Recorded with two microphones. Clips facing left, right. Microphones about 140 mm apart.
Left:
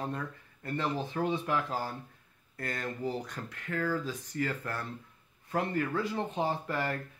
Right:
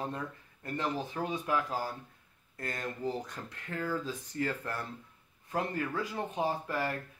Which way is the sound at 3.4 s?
20° right (ahead or behind).